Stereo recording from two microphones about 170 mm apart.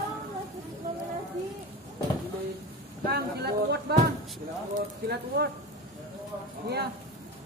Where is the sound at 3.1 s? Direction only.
70° right (ahead or behind).